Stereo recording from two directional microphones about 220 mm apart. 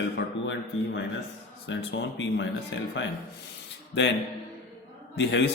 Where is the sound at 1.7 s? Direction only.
55° left (ahead or behind).